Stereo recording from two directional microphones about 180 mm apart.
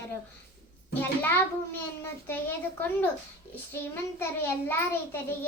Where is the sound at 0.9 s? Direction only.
10° left (ahead or behind).